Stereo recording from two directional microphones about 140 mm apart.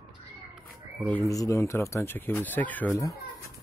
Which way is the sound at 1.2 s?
25° left (ahead or behind).